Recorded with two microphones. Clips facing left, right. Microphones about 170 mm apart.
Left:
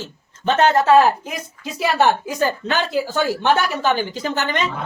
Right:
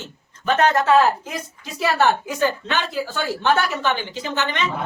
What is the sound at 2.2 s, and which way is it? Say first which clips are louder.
Speech: left 1 dB; 40° left (ahead or behind).